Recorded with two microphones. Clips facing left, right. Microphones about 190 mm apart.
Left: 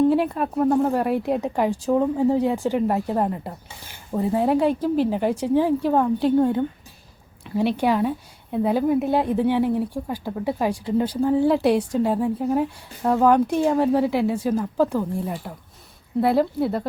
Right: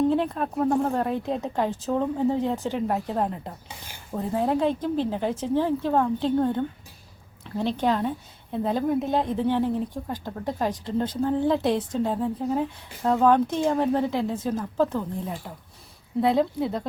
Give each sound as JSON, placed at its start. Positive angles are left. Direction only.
{"t": 0.1, "sound": "speech", "side_deg": 5}